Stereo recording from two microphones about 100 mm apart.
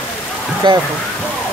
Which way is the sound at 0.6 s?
50° right (ahead or behind).